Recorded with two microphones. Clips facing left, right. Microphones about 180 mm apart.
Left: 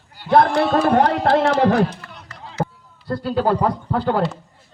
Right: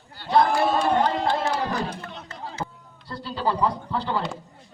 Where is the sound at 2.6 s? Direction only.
50° left (ahead or behind).